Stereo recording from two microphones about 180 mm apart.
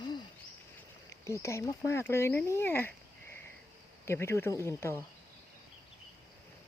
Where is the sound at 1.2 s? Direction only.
15° left (ahead or behind).